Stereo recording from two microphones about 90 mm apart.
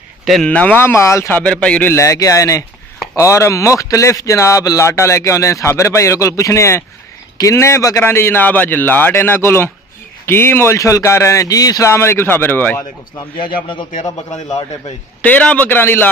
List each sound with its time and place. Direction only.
0.2 s a sound: centre (ahead or behind)
0.5 s a man's voice: 15° left (ahead or behind)
0.9 s speech: 30° left (ahead or behind)
1.3 s speech: 15° left (ahead or behind)
1.9 s a man's voice: 35° left (ahead or behind)
10.8 s speech: 35° left (ahead or behind)
11.9 s a man's voice: 30° left (ahead or behind)
13.7 s a man's voice: 60° left (ahead or behind)
15.2 s a man's voice: 15° left (ahead or behind)